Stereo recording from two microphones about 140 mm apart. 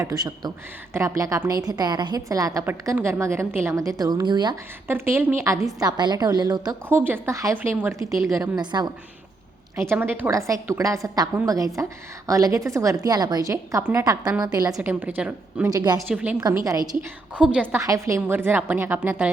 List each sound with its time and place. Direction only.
0.0 s a woman's voice: 25° right (ahead or behind)
4.9 s a woman's voice: 15° right (ahead or behind)
6.8 s a woman's voice: 15° right (ahead or behind)
8.1 s a woman's voice: centre (ahead or behind)
8.4 s a woman's voice: 30° right (ahead or behind)
9.9 s a woman's voice: 15° right (ahead or behind)
14.8 s a woman's voice: 10° right (ahead or behind)
15.7 s a woman's voice: 30° right (ahead or behind)
16.0 s a woman's voice: centre (ahead or behind)
16.6 s a woman's voice: 25° right (ahead or behind)
17.3 s a woman's voice: 10° right (ahead or behind)